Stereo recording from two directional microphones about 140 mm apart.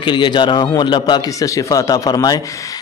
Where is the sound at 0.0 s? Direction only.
35° left (ahead or behind).